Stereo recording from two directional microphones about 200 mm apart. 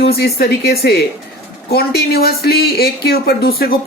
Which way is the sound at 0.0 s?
50° left (ahead or behind).